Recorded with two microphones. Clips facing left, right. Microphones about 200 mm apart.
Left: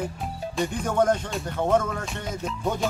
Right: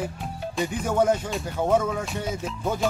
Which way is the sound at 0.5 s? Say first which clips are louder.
Even; 5° right (ahead or behind).